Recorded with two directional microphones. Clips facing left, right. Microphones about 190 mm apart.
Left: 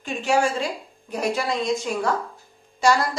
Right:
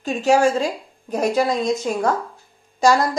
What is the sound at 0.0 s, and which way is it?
A woman's voice, 40° right (ahead or behind).